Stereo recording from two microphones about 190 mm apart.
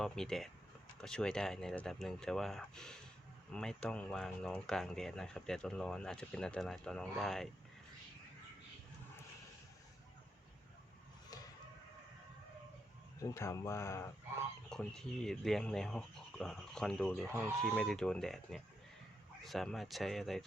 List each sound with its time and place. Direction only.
0.0 s speech: centre (ahead or behind)
13.2 s speech: 15° left (ahead or behind)
14.7 s speech: 5° left (ahead or behind)